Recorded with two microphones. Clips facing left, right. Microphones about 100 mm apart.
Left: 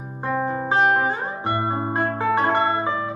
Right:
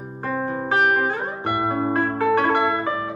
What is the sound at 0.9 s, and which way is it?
Music, 20° left (ahead or behind).